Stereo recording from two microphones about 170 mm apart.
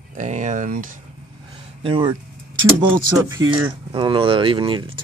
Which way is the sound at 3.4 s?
90° right.